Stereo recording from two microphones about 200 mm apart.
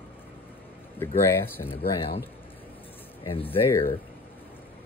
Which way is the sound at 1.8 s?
50° left (ahead or behind).